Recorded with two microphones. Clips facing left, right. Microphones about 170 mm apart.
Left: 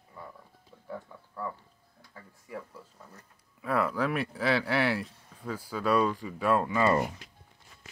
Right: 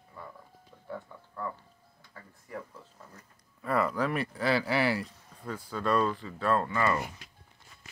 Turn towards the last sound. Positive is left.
turn(degrees=15)  # may be behind; listen again after turning